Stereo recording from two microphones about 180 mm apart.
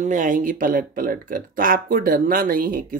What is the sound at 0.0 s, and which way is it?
Speech, 45° right (ahead or behind).